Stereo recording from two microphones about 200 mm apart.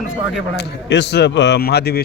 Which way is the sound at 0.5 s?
60° left (ahead or behind).